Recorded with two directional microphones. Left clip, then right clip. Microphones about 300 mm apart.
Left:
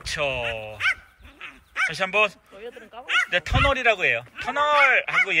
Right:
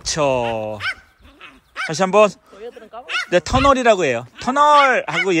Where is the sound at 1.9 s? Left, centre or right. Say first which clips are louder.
Right 10 dB; centre.